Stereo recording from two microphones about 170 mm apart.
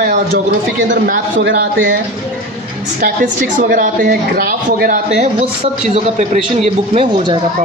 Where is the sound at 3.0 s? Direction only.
55° right (ahead or behind).